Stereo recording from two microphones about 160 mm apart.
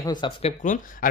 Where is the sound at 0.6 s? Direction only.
55° left (ahead or behind).